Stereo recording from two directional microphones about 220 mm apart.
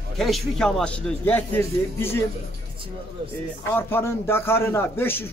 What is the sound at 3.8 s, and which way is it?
A man's voice, 10° left (ahead or behind).